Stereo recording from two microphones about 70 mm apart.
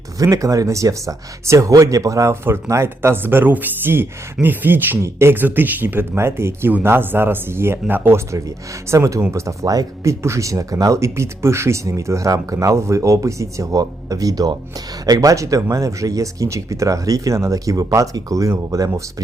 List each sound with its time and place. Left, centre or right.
0.2 s speech: right
6.1 s speech: right
8.3 s speech: right